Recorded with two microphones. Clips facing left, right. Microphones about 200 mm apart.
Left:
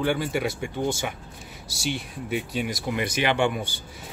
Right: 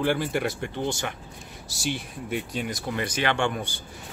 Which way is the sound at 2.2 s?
5° left (ahead or behind).